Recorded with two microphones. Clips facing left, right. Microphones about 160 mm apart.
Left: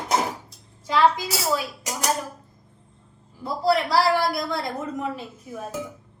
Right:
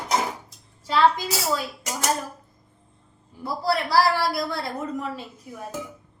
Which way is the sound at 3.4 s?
20° left (ahead or behind).